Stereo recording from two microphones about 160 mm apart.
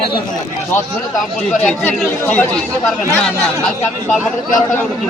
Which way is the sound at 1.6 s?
Centre (ahead or behind).